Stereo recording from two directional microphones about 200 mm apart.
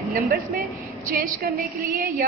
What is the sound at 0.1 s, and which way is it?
A woman's voice, 45° right (ahead or behind).